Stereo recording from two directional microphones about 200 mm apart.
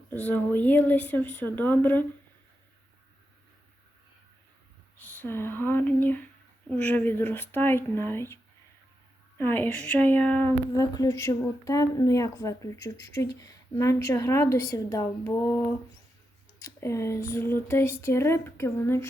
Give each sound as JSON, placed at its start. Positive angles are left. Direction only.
{"t": 0.1, "sound": "a woman's voice", "side_deg": 10}
{"t": 5.2, "sound": "a woman's voice", "side_deg": 10}
{"t": 9.4, "sound": "a woman's voice", "side_deg": 10}
{"t": 16.6, "sound": "a woman's voice", "side_deg": 15}